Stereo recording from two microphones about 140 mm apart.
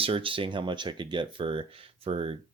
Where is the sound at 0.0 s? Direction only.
40° right (ahead or behind).